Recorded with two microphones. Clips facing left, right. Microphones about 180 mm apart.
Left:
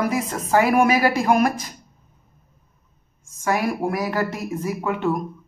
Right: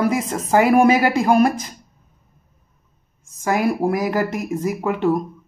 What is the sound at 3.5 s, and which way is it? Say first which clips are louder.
Speech: right 3 dB; 20° right (ahead or behind).